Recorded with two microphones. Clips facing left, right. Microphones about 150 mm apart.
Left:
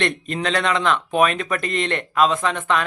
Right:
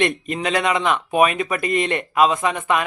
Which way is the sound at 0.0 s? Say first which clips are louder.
Right 2 dB; 10° right (ahead or behind).